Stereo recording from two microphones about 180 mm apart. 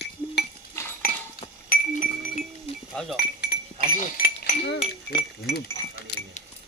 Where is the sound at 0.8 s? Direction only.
15° left (ahead or behind).